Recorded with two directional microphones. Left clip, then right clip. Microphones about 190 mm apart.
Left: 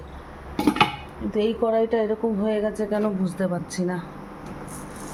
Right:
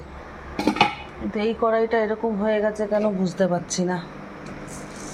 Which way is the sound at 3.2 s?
Centre (ahead or behind).